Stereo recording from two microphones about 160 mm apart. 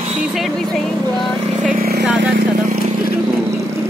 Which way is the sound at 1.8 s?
75° right (ahead or behind).